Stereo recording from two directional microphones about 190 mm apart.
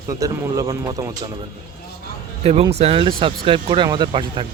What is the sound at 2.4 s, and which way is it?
Speech, 30° right (ahead or behind).